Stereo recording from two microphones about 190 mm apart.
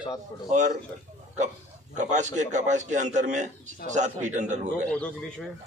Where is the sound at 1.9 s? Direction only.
40° right (ahead or behind).